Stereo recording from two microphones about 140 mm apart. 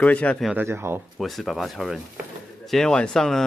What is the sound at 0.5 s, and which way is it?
Speech, 15° right (ahead or behind).